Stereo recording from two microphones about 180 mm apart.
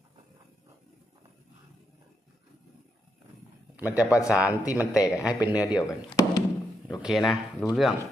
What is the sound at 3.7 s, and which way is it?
A man's voice, 10° right (ahead or behind).